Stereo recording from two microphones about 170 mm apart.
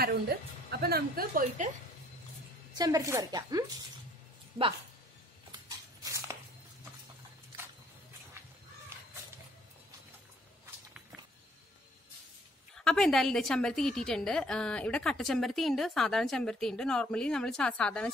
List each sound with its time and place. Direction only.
0.0 s a woman's voice: 65° right (ahead or behind)
2.8 s speech: 20° right (ahead or behind)
6.0 s a sound: 15° right (ahead or behind)
12.7 s a woman's voice: 5° left (ahead or behind)